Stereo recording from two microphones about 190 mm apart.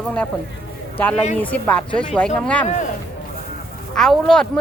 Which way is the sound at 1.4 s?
5° left (ahead or behind).